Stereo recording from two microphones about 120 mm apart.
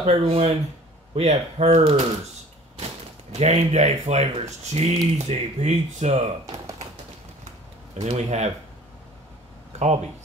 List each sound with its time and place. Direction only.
0.0 s speech: 60° right (ahead or behind)
8.0 s speech: 65° right (ahead or behind)
9.7 s a sound: 65° right (ahead or behind)